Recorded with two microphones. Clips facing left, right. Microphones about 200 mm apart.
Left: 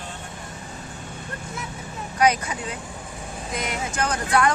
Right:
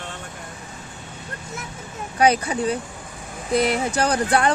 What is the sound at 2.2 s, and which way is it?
Speech, 30° right (ahead or behind).